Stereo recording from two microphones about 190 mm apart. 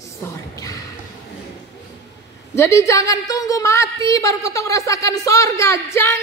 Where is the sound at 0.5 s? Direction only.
20° left (ahead or behind).